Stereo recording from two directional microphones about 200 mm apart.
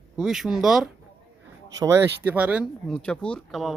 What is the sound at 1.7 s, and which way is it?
Speech, 15° right (ahead or behind).